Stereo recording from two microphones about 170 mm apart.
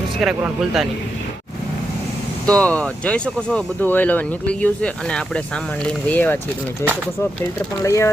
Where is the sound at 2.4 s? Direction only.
5° left (ahead or behind).